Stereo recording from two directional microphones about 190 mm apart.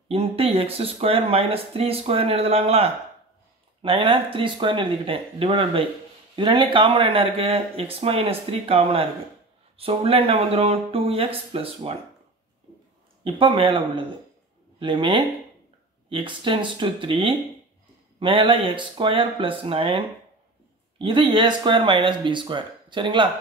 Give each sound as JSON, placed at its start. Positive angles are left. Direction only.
{"t": 0.1, "sound": "speech", "side_deg": -30}
{"t": 13.2, "sound": "speech", "side_deg": -25}